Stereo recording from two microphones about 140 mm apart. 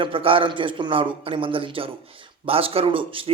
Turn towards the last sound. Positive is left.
turn(degrees=-40)  # may be behind; listen again after turning